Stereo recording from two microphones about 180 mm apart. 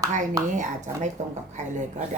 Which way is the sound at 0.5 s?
45° right (ahead or behind).